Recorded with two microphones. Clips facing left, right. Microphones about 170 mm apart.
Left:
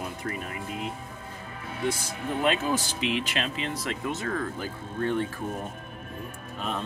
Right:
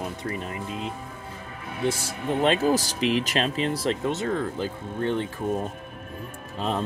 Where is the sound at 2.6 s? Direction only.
40° right (ahead or behind); by 5.2 s 20° right (ahead or behind).